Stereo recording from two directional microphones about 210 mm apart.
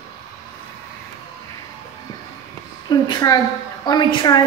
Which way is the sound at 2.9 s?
20° left (ahead or behind).